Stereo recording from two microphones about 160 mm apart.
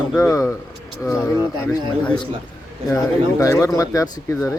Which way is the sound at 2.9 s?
20° left (ahead or behind).